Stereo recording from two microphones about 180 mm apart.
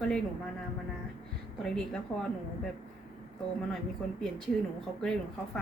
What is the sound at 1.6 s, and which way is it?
Speech, 5° left (ahead or behind).